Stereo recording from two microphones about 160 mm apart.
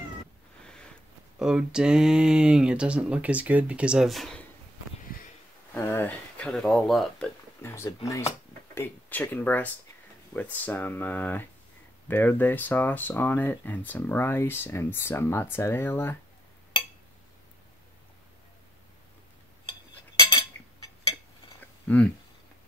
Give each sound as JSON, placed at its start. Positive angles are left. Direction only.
{"t": 1.4, "sound": "speech", "side_deg": -5}
{"t": 5.8, "sound": "speech", "side_deg": 15}
{"t": 7.6, "sound": "speech", "side_deg": 15}
{"t": 20.5, "sound": "a sound", "side_deg": 10}
{"t": 21.8, "sound": "speech", "side_deg": 10}